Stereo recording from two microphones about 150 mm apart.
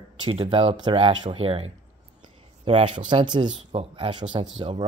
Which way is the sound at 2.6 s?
35° right (ahead or behind).